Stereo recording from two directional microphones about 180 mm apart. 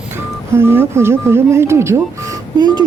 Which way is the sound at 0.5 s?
15° right (ahead or behind).